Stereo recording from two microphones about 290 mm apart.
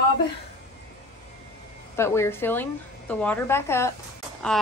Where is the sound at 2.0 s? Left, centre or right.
Centre.